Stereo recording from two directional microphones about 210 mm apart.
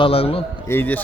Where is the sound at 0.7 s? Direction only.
10° left (ahead or behind).